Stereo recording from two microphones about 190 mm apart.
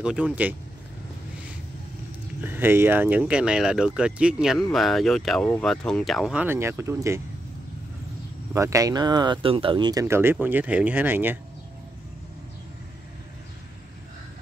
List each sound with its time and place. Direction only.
0.0 s speech: 5° right (ahead or behind)
2.4 s speech: 10° right (ahead or behind)
8.5 s speech: 15° right (ahead or behind)